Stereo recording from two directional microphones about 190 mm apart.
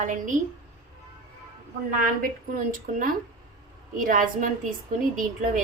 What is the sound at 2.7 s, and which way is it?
A woman's voice, 45° right (ahead or behind).